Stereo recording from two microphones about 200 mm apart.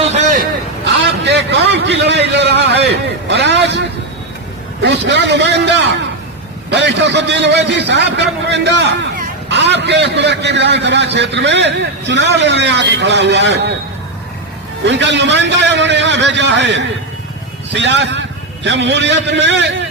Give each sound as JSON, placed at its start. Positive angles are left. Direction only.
{"t": 0.0, "sound": "a sound", "side_deg": -35}
{"t": 1.0, "sound": "vehicle", "side_deg": -60}
{"t": 3.2, "sound": "a man's voice", "side_deg": -60}
{"t": 14.8, "sound": "a man's voice", "side_deg": -60}